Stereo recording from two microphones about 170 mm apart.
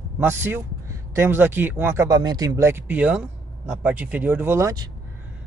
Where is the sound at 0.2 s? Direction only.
15° right (ahead or behind).